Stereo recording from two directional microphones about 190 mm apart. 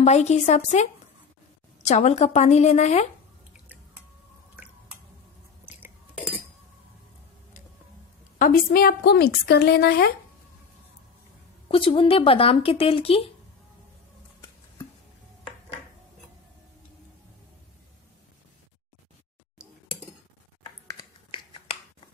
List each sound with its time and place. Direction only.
0.0 s a woman's voice: 35° left (ahead or behind)
5.8 s a sound: 10° right (ahead or behind)
8.4 s a woman's voice: 50° left (ahead or behind)
11.7 s speech: 25° left (ahead or behind)
20.8 s finger snapping: 20° left (ahead or behind)